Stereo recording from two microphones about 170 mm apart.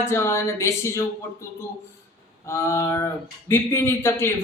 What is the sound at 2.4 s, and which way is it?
Speech, 15° left (ahead or behind).